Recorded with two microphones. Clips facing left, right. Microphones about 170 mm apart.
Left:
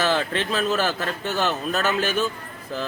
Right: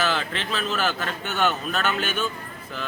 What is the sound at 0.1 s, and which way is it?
A man's voice, 40° left (ahead or behind).